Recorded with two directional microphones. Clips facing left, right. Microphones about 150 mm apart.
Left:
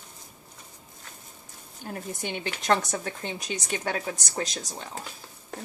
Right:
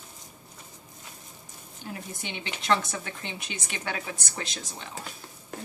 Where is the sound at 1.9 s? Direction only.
50° left (ahead or behind).